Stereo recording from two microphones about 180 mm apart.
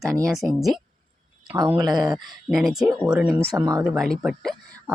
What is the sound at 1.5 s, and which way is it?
Speech, 25° right (ahead or behind).